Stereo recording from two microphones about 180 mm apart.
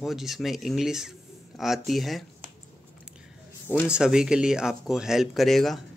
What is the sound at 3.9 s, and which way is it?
Speech, 5° right (ahead or behind).